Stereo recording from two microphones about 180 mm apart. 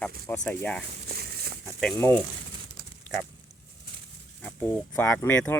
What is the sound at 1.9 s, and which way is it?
Speech, 15° left (ahead or behind).